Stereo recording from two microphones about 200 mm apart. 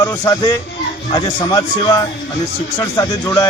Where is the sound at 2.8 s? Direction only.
15° left (ahead or behind).